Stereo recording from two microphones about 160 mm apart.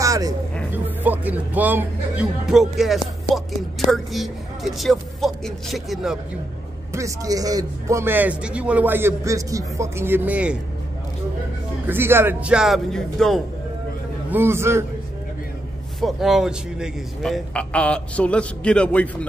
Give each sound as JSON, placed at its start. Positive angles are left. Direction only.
{"t": 0.0, "sound": "music", "side_deg": -20}
{"t": 0.8, "sound": "speech", "side_deg": -10}
{"t": 6.9, "sound": "a man's voice", "side_deg": -20}
{"t": 11.9, "sound": "speech", "side_deg": -15}
{"t": 14.3, "sound": "a man's voice", "side_deg": -15}
{"t": 16.0, "sound": "a man's voice", "side_deg": 0}